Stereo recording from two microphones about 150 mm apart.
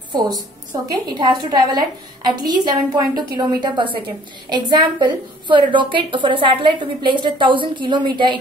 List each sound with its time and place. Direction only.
0.8 s a woman's voice: 30° right (ahead or behind)